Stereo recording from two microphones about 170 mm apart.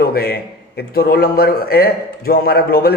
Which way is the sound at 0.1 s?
65° left (ahead or behind).